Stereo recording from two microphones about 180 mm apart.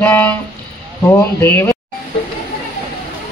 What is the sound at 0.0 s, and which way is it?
A man's voice, 10° left (ahead or behind).